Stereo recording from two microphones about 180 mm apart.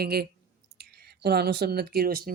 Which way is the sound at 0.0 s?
60° right (ahead or behind).